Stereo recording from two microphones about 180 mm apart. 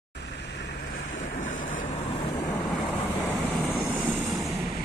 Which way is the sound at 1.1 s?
45° left (ahead or behind).